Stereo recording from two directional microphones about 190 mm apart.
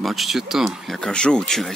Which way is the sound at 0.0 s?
Centre (ahead or behind).